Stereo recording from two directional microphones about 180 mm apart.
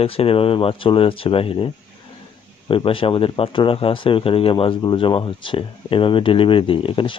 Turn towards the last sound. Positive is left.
turn(degrees=30)  # may be behind; listen again after turning